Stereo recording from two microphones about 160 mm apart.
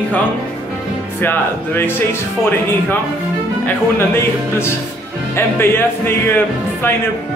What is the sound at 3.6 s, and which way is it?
Speech, 15° left (ahead or behind).